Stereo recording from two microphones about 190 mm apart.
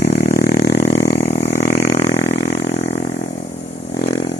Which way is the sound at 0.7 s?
35° left (ahead or behind).